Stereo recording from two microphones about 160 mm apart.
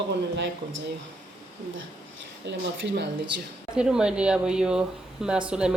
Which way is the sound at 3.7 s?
5° right (ahead or behind).